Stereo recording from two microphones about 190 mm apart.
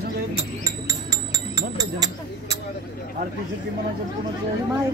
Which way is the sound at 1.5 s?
20° right (ahead or behind).